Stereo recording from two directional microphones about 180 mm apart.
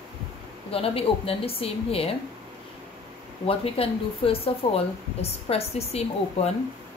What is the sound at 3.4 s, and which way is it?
A woman's voice, 35° left (ahead or behind).